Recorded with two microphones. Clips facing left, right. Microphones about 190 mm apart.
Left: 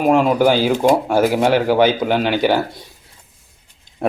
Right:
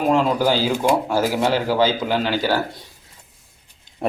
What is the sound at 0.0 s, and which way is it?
Speech, 15° left (ahead or behind).